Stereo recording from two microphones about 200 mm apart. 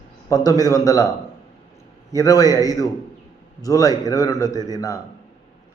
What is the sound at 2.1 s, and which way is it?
Speech, 15° left (ahead or behind).